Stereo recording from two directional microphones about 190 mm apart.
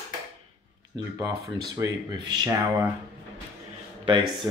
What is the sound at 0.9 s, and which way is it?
Speech, 15° right (ahead or behind).